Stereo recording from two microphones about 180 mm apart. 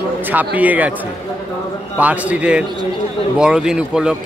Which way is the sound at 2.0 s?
10° right (ahead or behind).